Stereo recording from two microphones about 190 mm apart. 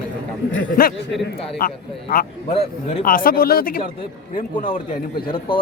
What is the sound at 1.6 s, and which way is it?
Speech, 50° left (ahead or behind).